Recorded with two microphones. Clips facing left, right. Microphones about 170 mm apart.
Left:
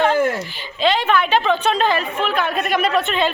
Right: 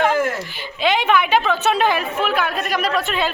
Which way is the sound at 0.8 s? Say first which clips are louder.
Even; 10° right (ahead or behind).